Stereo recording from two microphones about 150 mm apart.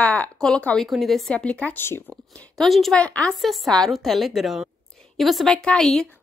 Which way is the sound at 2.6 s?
Centre (ahead or behind).